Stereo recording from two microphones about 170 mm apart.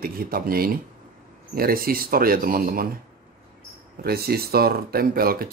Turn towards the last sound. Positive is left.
turn(degrees=-60)  # may be behind; listen again after turning